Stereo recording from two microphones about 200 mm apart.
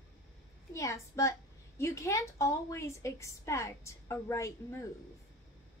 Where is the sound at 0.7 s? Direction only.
15° left (ahead or behind).